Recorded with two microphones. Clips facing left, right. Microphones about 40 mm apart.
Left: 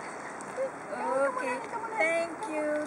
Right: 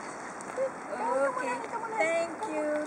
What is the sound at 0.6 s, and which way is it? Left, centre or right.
Speech, centre.